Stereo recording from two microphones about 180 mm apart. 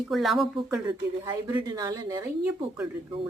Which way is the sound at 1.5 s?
20° right (ahead or behind).